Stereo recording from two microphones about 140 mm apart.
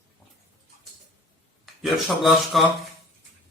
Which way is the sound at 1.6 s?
Centre (ahead or behind).